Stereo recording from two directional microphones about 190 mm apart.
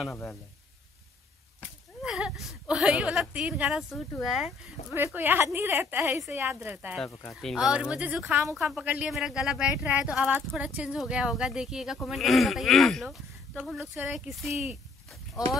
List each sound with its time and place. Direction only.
2.0 s a sound: 5° right (ahead or behind)
2.7 s a woman's voice: 5° right (ahead or behind)
7.1 s speech: 15° left (ahead or behind)
7.4 s speech: 5° right (ahead or behind)